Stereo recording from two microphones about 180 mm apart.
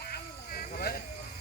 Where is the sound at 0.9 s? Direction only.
60° left (ahead or behind).